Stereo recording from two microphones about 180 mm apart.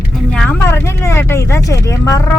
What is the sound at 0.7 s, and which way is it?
Vehicle, 15° left (ahead or behind).